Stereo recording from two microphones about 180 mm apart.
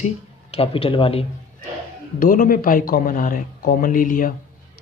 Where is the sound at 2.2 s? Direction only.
50° left (ahead or behind).